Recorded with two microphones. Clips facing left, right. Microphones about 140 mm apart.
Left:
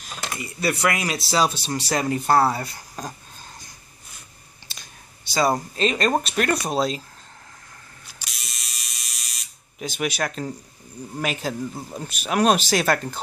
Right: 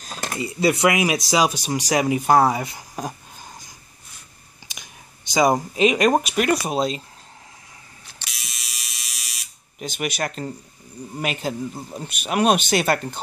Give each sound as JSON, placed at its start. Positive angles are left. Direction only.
{"t": 0.0, "sound": "a sound", "side_deg": -40}
{"t": 0.5, "sound": "speech", "side_deg": -20}
{"t": 4.6, "sound": "speech", "side_deg": -15}
{"t": 8.2, "sound": "electric toothbrush", "side_deg": 0}
{"t": 11.1, "sound": "speech", "side_deg": -5}